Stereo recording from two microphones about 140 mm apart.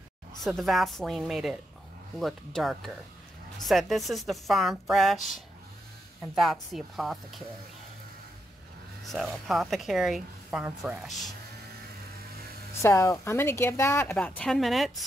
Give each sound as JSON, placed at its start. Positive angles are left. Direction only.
{"t": 0.4, "sound": "speech", "side_deg": 0}
{"t": 9.0, "sound": "speech", "side_deg": 0}
{"t": 12.8, "sound": "speech", "side_deg": 20}
{"t": 14.1, "sound": "speech", "side_deg": 5}